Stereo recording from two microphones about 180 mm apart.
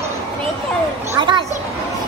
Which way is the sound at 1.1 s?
25° right (ahead or behind).